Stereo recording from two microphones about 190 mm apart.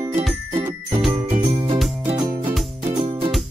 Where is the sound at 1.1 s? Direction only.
30° right (ahead or behind).